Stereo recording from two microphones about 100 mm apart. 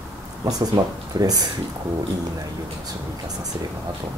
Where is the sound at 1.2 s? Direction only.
40° right (ahead or behind).